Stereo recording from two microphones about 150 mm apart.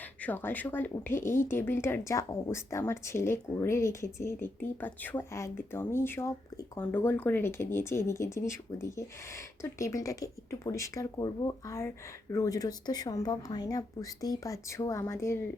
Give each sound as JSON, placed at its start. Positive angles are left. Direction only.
{"t": 0.2, "sound": "speech", "side_deg": 10}